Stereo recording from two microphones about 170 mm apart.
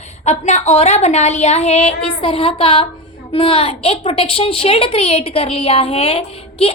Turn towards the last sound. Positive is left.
turn(degrees=35)  # may be behind; listen again after turning